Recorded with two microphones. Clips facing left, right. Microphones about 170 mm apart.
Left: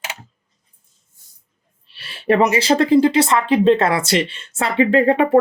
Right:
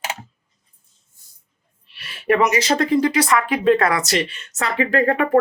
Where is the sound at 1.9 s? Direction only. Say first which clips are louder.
Left 2 dB; 30° left (ahead or behind).